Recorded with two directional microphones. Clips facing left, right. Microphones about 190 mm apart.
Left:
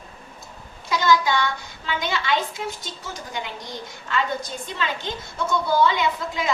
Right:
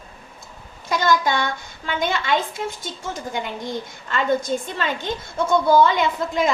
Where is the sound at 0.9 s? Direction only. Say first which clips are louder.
Right 1 dB; 50° right (ahead or behind).